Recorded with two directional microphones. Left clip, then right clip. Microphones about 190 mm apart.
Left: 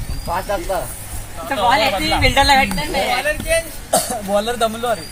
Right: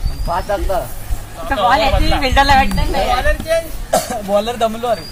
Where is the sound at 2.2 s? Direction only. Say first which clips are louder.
Right 2 dB; 25° left (ahead or behind).